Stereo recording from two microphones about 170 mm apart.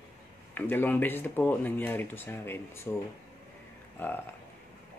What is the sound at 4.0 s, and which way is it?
Speech, 10° left (ahead or behind).